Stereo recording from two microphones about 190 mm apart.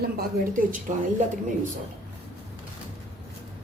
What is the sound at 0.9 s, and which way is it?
Speech, 40° right (ahead or behind).